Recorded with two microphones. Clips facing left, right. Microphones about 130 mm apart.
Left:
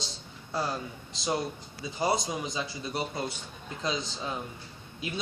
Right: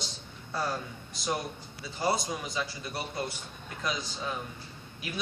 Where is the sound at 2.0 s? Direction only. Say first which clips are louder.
Left 1 dB; 20° left (ahead or behind).